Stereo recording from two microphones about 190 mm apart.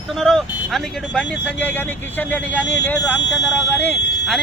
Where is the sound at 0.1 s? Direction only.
Centre (ahead or behind).